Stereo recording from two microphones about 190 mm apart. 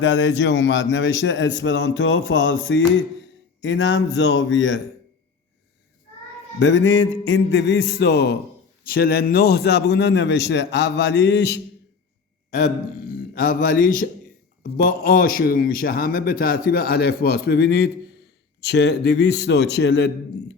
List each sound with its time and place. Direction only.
0.0 s a man's voice: 70° left (ahead or behind)
6.6 s a man's voice: 70° left (ahead or behind)
12.5 s a man's voice: 45° left (ahead or behind); by 20.1 s 65° left (ahead or behind)